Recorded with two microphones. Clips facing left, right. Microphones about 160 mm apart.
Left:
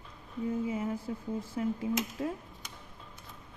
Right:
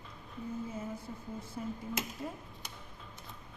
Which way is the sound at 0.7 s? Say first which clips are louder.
Left 7 dB; 90° left.